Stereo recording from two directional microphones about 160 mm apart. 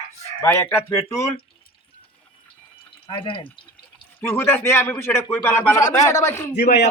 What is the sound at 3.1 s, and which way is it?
Speech, 30° left (ahead or behind).